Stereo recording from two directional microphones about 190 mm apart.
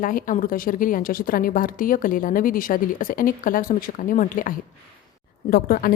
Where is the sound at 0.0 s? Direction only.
45° left (ahead or behind).